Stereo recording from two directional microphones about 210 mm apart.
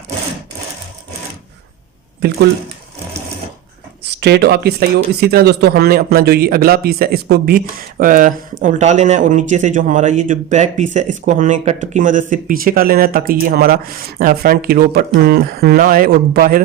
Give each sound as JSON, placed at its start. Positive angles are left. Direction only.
{"t": 2.2, "sound": "speech", "side_deg": -50}
{"t": 4.2, "sound": "speech", "side_deg": -50}